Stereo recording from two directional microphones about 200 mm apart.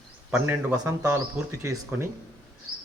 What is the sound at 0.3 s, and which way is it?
Speech, 10° right (ahead or behind).